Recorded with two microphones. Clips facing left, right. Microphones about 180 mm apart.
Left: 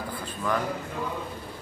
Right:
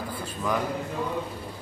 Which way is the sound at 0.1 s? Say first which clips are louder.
Even; 10° right (ahead or behind).